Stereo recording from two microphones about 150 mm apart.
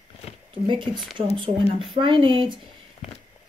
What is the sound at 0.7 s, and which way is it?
Speech, 30° right (ahead or behind).